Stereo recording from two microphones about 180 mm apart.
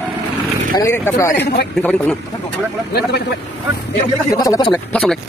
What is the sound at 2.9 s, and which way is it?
Speech, 65° left (ahead or behind).